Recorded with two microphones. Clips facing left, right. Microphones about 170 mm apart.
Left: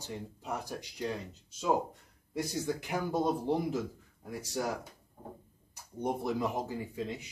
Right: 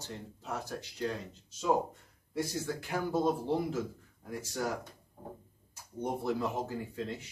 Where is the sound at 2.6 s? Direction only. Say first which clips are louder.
Left 1 dB; 15° left (ahead or behind).